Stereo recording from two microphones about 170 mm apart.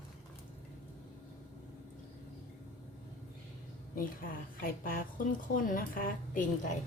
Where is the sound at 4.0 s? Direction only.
55° left (ahead or behind).